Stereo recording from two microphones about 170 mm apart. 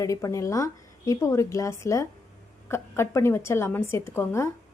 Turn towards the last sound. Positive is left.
turn(degrees=15)  # may be behind; listen again after turning